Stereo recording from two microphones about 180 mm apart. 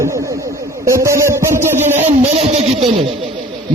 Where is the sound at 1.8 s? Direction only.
40° right (ahead or behind).